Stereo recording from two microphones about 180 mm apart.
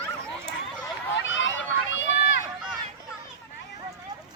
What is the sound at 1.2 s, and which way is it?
Run, 90° left.